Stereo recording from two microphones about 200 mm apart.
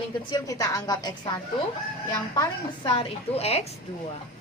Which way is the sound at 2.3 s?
25° left (ahead or behind).